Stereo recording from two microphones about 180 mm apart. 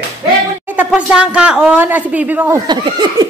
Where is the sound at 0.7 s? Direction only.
10° right (ahead or behind).